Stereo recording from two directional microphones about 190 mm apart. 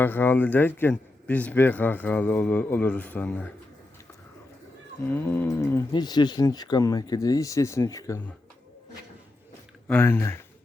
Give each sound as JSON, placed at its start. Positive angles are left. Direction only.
{"t": 0.0, "sound": "speech", "side_deg": 10}
{"t": 5.0, "sound": "speech", "side_deg": 10}
{"t": 9.9, "sound": "speech", "side_deg": 10}